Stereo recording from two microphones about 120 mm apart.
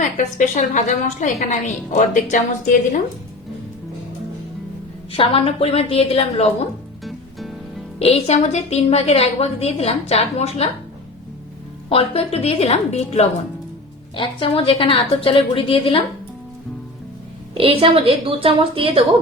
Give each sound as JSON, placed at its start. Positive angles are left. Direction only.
{"t": 0.0, "sound": "a woman's voice", "side_deg": 90}
{"t": 5.1, "sound": "a woman's voice", "side_deg": 50}
{"t": 7.0, "sound": "music", "side_deg": 0}
{"t": 7.9, "sound": "a woman's voice", "side_deg": 60}
{"t": 11.9, "sound": "a woman's voice", "side_deg": 55}
{"t": 14.2, "sound": "a woman's voice", "side_deg": 45}
{"t": 17.5, "sound": "a woman's voice", "side_deg": -50}